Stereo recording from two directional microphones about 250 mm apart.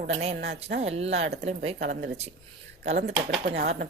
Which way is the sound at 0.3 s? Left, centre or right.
Right.